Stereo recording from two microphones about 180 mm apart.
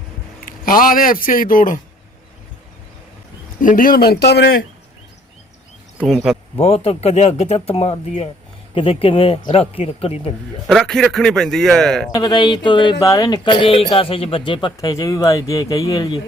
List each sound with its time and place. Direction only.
0.4 s speech: 50° left (ahead or behind)
3.6 s speech: 50° left (ahead or behind); by 4.5 s 65° left (ahead or behind)
6.0 s a man's voice: centre (ahead or behind)
6.6 s speech: 35° left (ahead or behind)
10.7 s a man's voice: centre (ahead or behind)
12.1 s speech: 20° left (ahead or behind)